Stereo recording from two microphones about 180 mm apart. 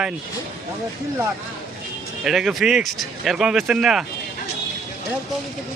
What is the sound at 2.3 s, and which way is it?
Speech, centre (ahead or behind).